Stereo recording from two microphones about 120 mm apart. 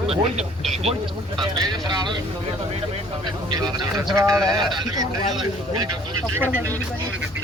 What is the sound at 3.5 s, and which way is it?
Speech, 30° right (ahead or behind).